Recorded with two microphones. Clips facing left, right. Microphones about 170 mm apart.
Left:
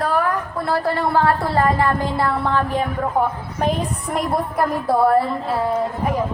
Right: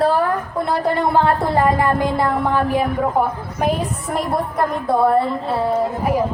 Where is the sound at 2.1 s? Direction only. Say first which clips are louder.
Right 2 dB; 15° right (ahead or behind).